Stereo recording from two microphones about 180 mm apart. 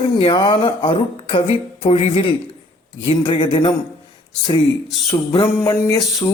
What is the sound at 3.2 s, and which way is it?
Speech, 25° left (ahead or behind).